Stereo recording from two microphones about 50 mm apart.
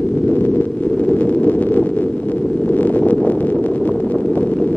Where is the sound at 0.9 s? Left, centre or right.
Left.